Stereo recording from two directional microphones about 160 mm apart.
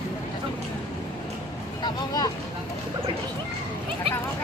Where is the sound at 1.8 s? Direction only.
25° left (ahead or behind).